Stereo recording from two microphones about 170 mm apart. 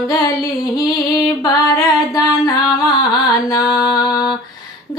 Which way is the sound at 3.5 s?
20° left (ahead or behind).